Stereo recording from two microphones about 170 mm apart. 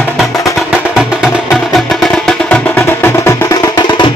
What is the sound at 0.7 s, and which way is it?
Music, 5° right (ahead or behind).